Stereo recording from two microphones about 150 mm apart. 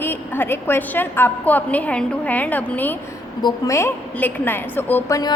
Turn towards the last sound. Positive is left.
turn(degrees=20)  # may be behind; listen again after turning